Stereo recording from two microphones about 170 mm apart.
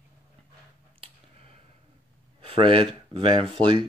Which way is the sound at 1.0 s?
35° right (ahead or behind).